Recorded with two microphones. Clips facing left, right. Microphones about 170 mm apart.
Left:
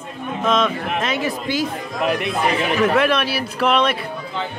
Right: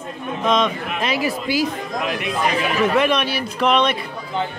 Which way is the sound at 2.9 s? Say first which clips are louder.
Even; centre (ahead or behind).